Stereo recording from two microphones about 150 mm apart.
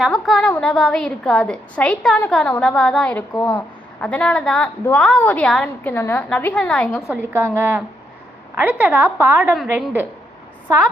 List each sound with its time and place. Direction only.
0.0 s a woman's voice: centre (ahead or behind)
7.1 s a woman's voice: 15° right (ahead or behind)